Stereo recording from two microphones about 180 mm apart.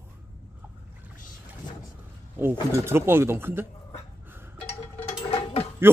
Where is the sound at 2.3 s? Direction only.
10° right (ahead or behind).